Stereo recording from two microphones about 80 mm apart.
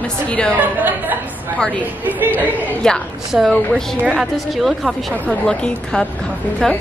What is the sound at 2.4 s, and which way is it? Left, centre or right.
Speech, right.